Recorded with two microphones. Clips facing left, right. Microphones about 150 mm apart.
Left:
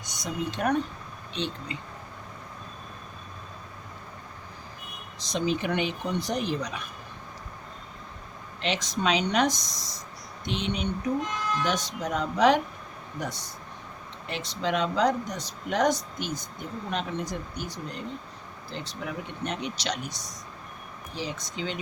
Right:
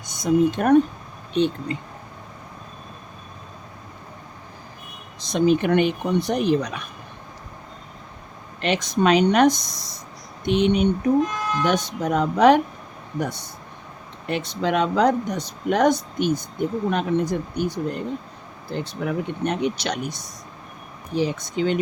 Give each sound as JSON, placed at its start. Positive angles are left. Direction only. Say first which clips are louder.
{"t": 0.0, "sound": "speech", "louder": "right 14 dB", "side_deg": -50}
{"t": 5.2, "sound": "speech", "louder": "right 9 dB", "side_deg": -55}
{"t": 8.6, "sound": "speech", "louder": "right 8 dB", "side_deg": -60}